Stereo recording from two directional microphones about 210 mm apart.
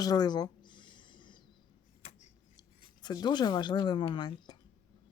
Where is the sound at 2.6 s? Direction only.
20° left (ahead or behind).